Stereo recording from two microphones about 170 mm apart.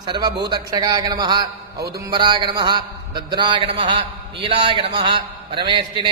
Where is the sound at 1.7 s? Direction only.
70° right (ahead or behind).